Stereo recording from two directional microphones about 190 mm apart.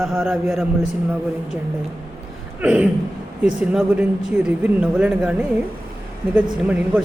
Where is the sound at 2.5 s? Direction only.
5° right (ahead or behind).